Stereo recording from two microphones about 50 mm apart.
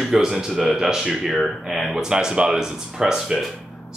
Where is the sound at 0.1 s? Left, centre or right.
Centre.